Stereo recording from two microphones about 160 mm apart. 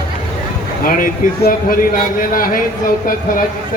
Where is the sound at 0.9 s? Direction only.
60° left (ahead or behind).